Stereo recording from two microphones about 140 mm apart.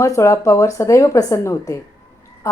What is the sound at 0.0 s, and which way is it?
Speech, 20° left (ahead or behind).